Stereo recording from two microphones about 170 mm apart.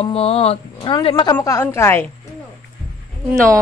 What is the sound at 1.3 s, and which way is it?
Speech, 15° left (ahead or behind).